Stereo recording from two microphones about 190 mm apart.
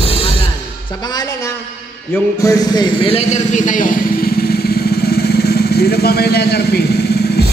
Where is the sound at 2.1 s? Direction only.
15° left (ahead or behind).